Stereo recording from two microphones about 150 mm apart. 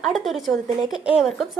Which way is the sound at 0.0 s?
Centre (ahead or behind).